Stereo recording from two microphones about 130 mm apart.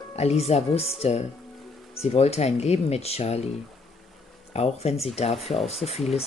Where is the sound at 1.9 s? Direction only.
55° left (ahead or behind).